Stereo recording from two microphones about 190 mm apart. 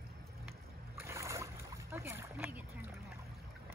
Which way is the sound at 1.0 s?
15° right (ahead or behind).